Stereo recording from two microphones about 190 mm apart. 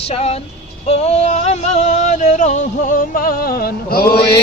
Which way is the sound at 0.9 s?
35° left (ahead or behind).